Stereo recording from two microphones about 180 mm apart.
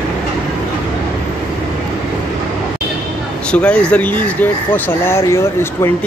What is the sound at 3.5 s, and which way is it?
Speech, 5° left (ahead or behind).